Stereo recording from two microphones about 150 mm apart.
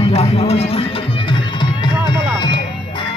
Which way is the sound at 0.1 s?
45° left (ahead or behind).